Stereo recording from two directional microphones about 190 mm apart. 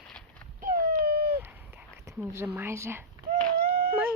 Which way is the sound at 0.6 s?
50° right (ahead or behind).